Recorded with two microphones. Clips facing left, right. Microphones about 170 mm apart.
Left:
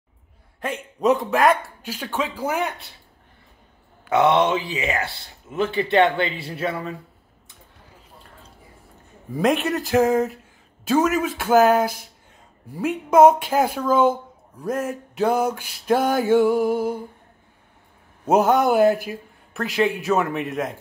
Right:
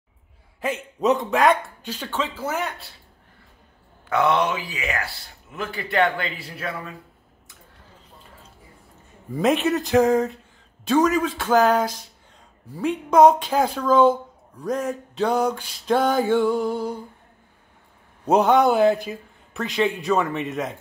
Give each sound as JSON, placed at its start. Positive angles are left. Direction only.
{"t": 0.6, "sound": "male singing", "side_deg": 0}
{"t": 4.1, "sound": "speech", "side_deg": 20}
{"t": 9.3, "sound": "speech", "side_deg": 0}
{"t": 10.9, "sound": "male singing", "side_deg": 5}
{"t": 18.2, "sound": "speech", "side_deg": 5}